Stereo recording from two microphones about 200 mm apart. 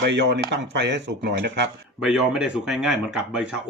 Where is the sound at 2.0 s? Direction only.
5° right (ahead or behind).